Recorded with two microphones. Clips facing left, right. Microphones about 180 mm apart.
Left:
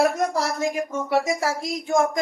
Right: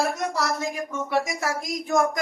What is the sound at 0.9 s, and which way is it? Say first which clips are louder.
Speech: left 3 dB; 40° left (ahead or behind).